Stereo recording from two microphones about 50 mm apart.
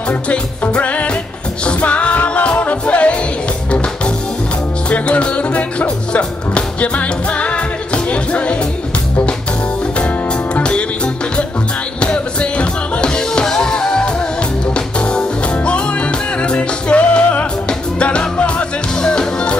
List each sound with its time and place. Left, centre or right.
0.7 s music: left
4.8 s music: left
9.9 s music: left
12.0 s music: left